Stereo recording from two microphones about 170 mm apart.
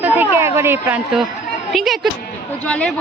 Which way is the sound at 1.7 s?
Centre (ahead or behind).